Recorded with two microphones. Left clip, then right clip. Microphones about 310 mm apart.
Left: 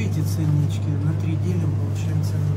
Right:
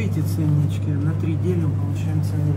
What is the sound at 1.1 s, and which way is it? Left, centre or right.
Speech, centre.